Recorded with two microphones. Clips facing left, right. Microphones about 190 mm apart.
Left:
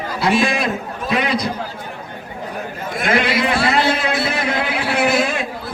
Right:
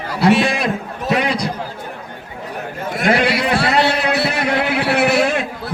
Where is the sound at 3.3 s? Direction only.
70° right (ahead or behind).